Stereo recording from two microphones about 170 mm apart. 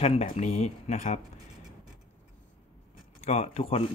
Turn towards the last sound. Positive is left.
turn(degrees=35)  # may be behind; listen again after turning